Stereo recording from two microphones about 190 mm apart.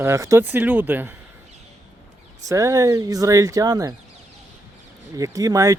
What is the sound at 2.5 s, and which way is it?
Speech, 15° right (ahead or behind).